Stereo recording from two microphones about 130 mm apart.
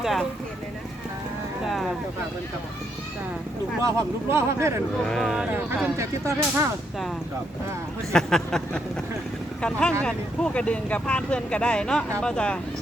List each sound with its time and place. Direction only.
0.0 s speech: centre (ahead or behind)
3.8 s speech: 20° right (ahead or behind)
5.0 s speech: 5° left (ahead or behind)
6.0 s speech: 25° right (ahead or behind)
8.1 s speech: 5° left (ahead or behind)